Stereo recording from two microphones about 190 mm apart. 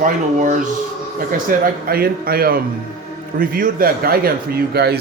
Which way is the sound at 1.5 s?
50° right (ahead or behind).